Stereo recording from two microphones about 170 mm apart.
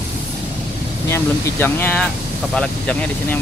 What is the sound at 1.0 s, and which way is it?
Speech, 15° left (ahead or behind).